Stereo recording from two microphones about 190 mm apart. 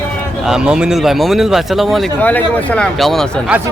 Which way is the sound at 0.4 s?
5° right (ahead or behind).